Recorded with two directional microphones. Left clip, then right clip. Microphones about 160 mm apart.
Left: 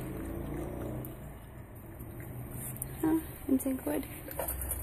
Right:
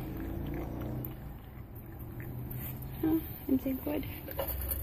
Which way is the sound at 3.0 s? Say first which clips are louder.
Left 1 dB; 20° left (ahead or behind).